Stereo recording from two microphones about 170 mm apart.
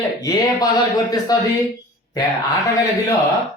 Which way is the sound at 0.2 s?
20° left (ahead or behind).